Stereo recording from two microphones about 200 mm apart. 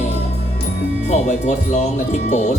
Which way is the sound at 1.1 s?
35° left (ahead or behind).